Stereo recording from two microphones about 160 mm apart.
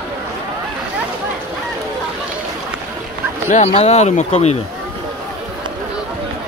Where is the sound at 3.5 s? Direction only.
40° left (ahead or behind).